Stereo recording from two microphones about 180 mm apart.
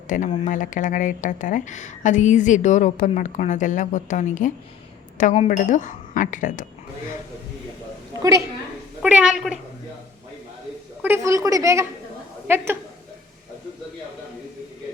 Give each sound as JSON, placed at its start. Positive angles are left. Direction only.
{"t": 0.1, "sound": "a woman's voice", "side_deg": 45}
{"t": 8.2, "sound": "a woman's voice", "side_deg": -15}
{"t": 9.0, "sound": "a woman's voice", "side_deg": -5}
{"t": 11.0, "sound": "a woman's voice", "side_deg": -15}